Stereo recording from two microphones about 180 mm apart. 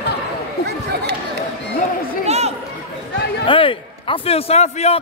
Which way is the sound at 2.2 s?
35° right (ahead or behind).